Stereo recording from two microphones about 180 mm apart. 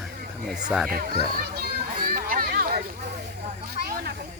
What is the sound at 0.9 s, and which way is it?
Speech, 55° right (ahead or behind).